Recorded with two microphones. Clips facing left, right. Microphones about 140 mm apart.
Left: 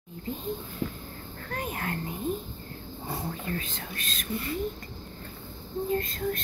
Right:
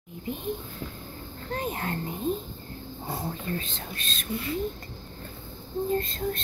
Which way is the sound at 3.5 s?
25° right (ahead or behind).